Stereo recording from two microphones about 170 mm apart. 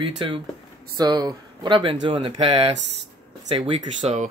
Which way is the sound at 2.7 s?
90° right.